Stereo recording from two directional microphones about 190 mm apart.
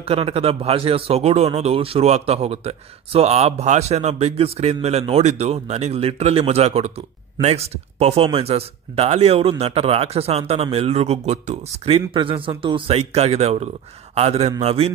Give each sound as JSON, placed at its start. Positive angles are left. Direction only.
{"t": 0.0, "sound": "a man's voice", "side_deg": -30}